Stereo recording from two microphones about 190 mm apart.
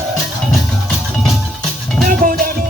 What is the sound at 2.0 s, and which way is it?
Music, 45° right (ahead or behind).